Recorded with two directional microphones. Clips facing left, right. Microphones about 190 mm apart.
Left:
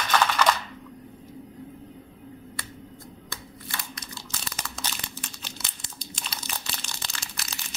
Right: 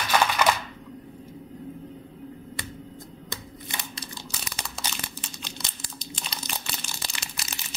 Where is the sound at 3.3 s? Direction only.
20° right (ahead or behind).